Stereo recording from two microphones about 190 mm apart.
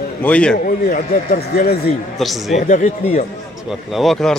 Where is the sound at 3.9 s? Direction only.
Centre (ahead or behind).